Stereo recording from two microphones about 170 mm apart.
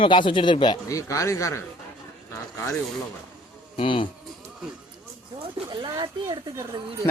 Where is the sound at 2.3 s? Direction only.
15° left (ahead or behind).